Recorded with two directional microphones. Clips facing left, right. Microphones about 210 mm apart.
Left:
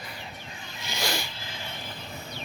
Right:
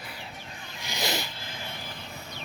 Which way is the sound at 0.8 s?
15° right (ahead or behind).